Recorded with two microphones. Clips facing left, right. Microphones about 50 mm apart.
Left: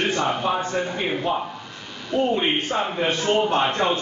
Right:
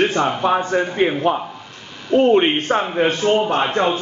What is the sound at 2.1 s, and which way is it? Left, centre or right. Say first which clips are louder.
Speech: right 7 dB; right.